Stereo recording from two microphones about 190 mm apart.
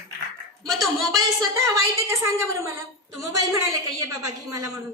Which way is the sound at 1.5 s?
15° right (ahead or behind).